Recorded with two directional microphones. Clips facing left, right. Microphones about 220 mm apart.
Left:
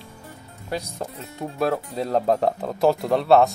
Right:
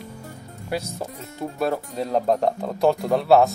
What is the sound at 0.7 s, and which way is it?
Speech, 10° right (ahead or behind).